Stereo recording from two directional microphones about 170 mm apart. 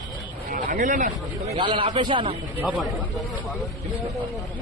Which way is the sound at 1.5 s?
30° right (ahead or behind).